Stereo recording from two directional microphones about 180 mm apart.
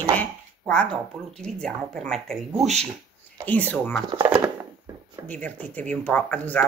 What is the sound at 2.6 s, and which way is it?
Speech, 40° right (ahead or behind).